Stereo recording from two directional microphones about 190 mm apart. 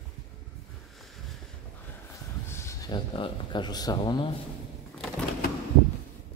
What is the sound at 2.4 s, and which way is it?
Speech, 15° left (ahead or behind).